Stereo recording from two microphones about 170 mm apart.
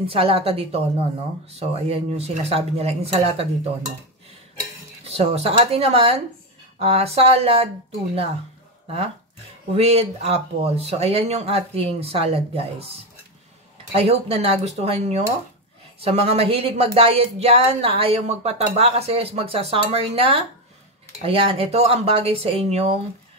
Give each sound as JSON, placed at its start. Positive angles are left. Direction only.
{"t": 0.0, "sound": "speech", "side_deg": -35}
{"t": 5.0, "sound": "speech", "side_deg": -40}
{"t": 9.8, "sound": "speech", "side_deg": -35}
{"t": 13.9, "sound": "speech", "side_deg": -35}